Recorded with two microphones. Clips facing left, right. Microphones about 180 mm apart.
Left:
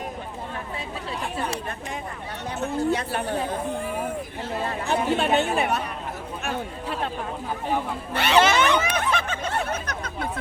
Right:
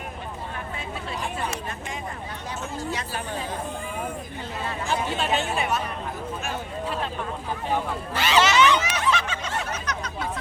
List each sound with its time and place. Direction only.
2.6 s speech: 60° left (ahead or behind)
4.9 s speech: 60° left (ahead or behind)
8.1 s a sound: 60° left (ahead or behind)